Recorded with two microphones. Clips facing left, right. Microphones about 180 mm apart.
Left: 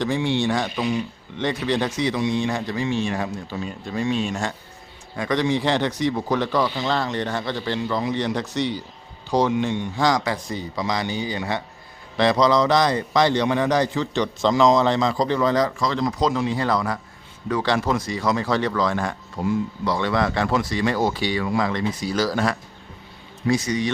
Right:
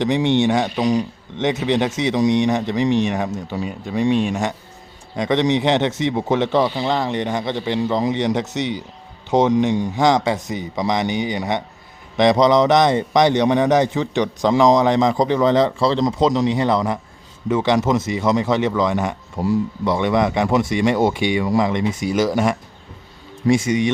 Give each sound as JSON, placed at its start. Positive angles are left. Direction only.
{"t": 0.0, "sound": "a man's voice", "side_deg": -20}
{"t": 0.8, "sound": "speech", "side_deg": -40}
{"t": 1.4, "sound": "a man's voice", "side_deg": -20}